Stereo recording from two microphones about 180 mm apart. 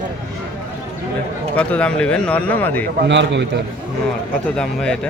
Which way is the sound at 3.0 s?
80° right.